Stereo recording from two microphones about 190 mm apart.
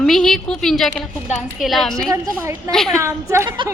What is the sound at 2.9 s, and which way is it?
Speech, 15° right (ahead or behind).